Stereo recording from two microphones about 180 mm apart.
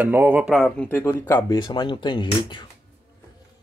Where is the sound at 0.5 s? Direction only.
5° left (ahead or behind); by 2.7 s 25° left (ahead or behind).